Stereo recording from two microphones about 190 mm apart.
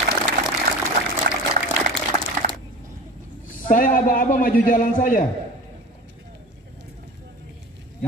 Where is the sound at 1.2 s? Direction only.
60° right (ahead or behind).